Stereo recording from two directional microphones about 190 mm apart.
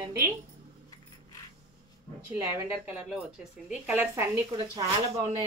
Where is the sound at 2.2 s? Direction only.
15° right (ahead or behind).